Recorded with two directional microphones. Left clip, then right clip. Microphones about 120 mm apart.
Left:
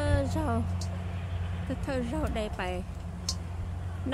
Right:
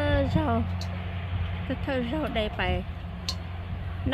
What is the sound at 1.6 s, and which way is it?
Speech, 15° right (ahead or behind).